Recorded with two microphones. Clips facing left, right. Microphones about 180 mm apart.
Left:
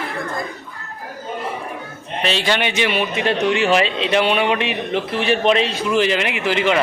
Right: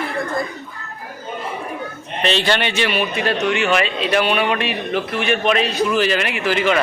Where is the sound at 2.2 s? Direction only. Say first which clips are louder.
Right 1 dB; 10° left (ahead or behind).